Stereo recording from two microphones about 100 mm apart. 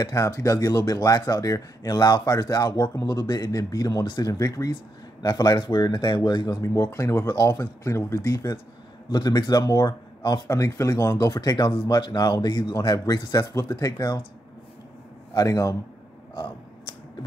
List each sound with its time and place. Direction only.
0.0 s speech: 35° left (ahead or behind)
6.6 s speech: 30° left (ahead or behind)
9.1 s speech: 45° left (ahead or behind)
11.3 s speech: 45° left (ahead or behind)
15.3 s speech: 35° left (ahead or behind)